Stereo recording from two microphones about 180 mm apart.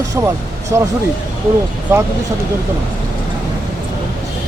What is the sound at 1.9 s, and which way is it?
Speech, 15° right (ahead or behind).